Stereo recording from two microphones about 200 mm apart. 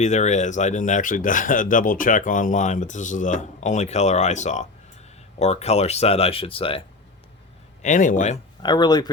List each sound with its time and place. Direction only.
0.0 s speech: 35° left (ahead or behind)
7.8 s speech: 40° left (ahead or behind)
8.6 s speech: 20° left (ahead or behind)